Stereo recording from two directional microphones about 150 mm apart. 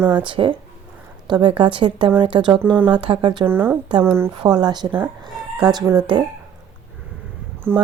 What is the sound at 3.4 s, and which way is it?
Speech, 15° right (ahead or behind).